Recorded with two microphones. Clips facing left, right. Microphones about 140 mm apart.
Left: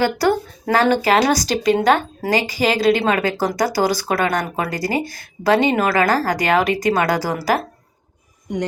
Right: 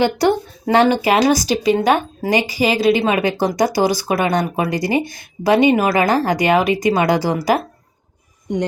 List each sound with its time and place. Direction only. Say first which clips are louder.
0.0 s speech: right 2 dB; 20° right (ahead or behind)